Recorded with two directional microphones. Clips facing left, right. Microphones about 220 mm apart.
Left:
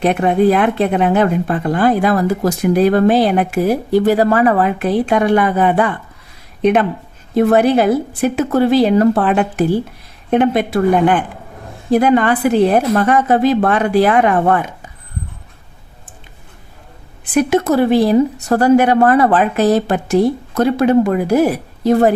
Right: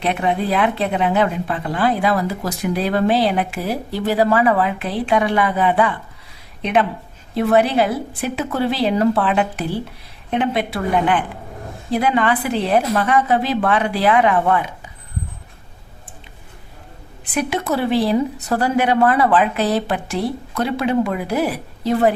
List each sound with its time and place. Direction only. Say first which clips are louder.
0.0 s a woman's voice: left 8 dB; 50° left (ahead or behind)
17.3 s speech: left 8 dB; 45° left (ahead or behind)